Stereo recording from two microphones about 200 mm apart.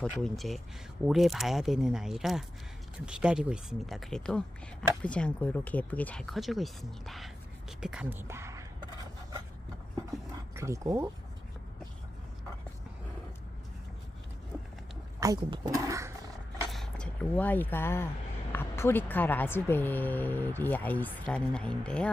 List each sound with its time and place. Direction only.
0.0 s speech: 5° left (ahead or behind); by 8.9 s 15° right (ahead or behind)
10.5 s speech: 15° right (ahead or behind)
15.2 s speech: 20° right (ahead or behind)
16.6 s a woman's voice: centre (ahead or behind)